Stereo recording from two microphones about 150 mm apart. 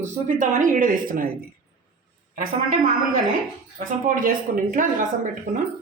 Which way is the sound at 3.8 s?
70° right (ahead or behind).